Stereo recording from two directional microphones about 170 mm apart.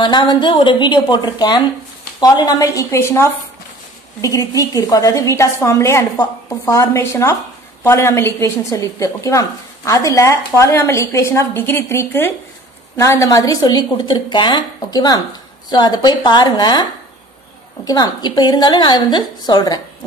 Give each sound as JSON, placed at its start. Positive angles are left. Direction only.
{"t": 0.0, "sound": "a woman's voice", "side_deg": 25}
{"t": 17.8, "sound": "a woman's voice", "side_deg": 25}